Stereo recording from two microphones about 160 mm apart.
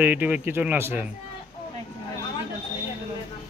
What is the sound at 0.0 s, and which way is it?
Speech, 10° right (ahead or behind).